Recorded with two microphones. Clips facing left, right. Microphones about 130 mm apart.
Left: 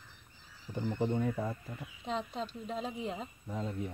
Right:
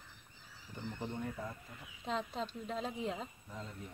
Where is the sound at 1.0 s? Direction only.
90° left.